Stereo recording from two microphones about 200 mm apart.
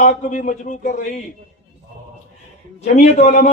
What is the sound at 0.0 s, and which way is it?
Speech, 40° left (ahead or behind).